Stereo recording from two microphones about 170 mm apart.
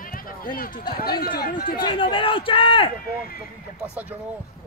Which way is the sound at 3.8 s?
10° right (ahead or behind).